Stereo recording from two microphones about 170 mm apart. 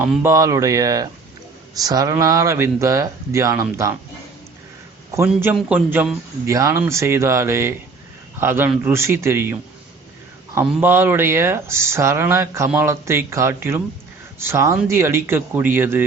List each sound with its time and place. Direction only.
0.0 s speech: 15° right (ahead or behind)
5.5 s speech: 10° right (ahead or behind)